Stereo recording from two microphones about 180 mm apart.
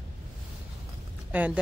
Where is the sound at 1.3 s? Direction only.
5° right (ahead or behind).